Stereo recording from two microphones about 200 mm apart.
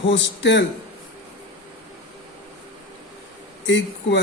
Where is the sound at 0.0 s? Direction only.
65° left (ahead or behind).